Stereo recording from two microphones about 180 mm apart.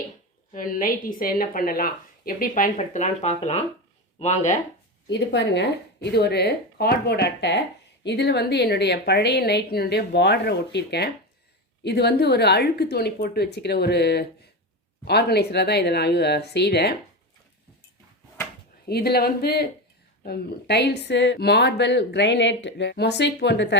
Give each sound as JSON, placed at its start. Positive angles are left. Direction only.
{"t": 0.5, "sound": "a woman's voice", "side_deg": 50}
{"t": 5.0, "sound": "a woman's voice", "side_deg": 75}
{"t": 18.9, "sound": "a woman's voice", "side_deg": 60}